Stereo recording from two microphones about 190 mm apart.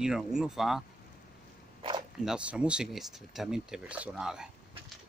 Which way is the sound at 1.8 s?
25° right (ahead or behind).